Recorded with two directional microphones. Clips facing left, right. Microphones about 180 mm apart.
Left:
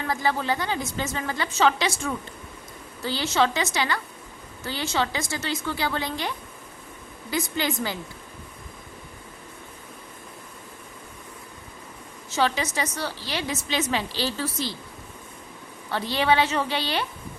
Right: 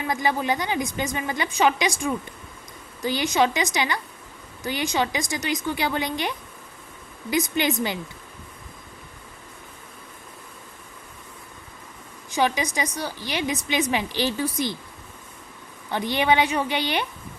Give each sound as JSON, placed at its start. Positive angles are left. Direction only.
{"t": 0.0, "sound": "a woman's voice", "side_deg": -15}
{"t": 12.3, "sound": "a woman's voice", "side_deg": -15}
{"t": 15.9, "sound": "a woman's voice", "side_deg": -15}